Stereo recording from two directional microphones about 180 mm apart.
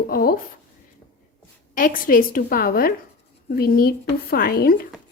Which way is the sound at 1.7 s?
50° left (ahead or behind).